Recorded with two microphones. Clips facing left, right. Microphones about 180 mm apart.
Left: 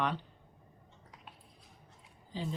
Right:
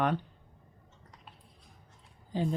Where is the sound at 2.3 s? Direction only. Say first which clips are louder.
Right 8 dB; 50° right (ahead or behind).